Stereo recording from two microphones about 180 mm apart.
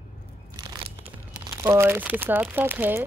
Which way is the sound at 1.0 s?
15° right (ahead or behind).